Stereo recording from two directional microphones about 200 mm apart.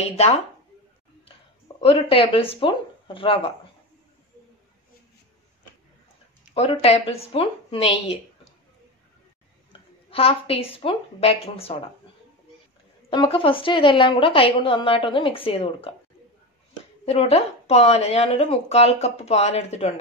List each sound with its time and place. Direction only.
0.0 s speech: 30° left (ahead or behind)
1.8 s a woman's voice: 30° left (ahead or behind)
6.5 s a woman's voice: 30° left (ahead or behind)
9.7 s a woman's voice: 30° left (ahead or behind)
13.1 s a woman's voice: 25° left (ahead or behind)
17.0 s speech: 30° left (ahead or behind)